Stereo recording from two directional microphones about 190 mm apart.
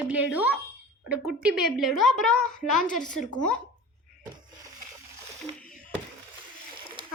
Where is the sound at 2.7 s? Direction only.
40° left (ahead or behind).